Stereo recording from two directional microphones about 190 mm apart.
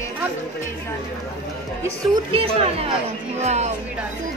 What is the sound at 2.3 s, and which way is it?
Speech, 30° right (ahead or behind).